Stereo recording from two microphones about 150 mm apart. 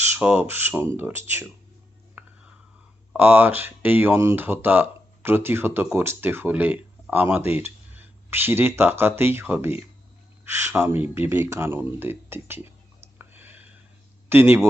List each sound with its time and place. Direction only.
0.0 s speech: 10° right (ahead or behind)
2.2 s whispering: 10° right (ahead or behind)
3.1 s speech: 15° right (ahead or behind)
13.1 s a sound: 15° right (ahead or behind)
14.3 s speech: 15° right (ahead or behind)